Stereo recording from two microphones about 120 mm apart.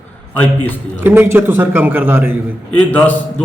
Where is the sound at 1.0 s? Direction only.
15° right (ahead or behind).